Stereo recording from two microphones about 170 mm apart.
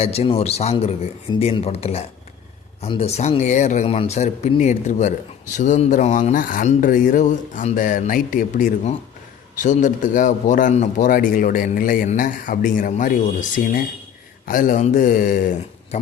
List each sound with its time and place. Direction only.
0.0 s a man's voice: 35° left (ahead or behind); by 15.4 s 55° left (ahead or behind)